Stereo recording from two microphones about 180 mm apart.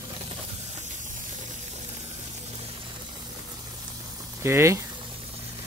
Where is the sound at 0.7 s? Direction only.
45° right (ahead or behind).